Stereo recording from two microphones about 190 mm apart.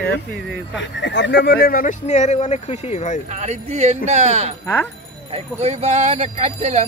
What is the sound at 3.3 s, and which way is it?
Speech, 35° right (ahead or behind).